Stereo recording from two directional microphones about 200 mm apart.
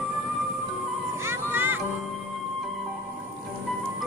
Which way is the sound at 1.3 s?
10° right (ahead or behind).